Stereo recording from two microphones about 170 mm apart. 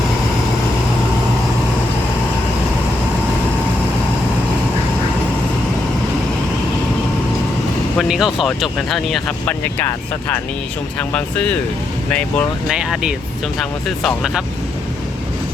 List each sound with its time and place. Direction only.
7.9 s speech: centre (ahead or behind)
12.7 s speech: 5° right (ahead or behind)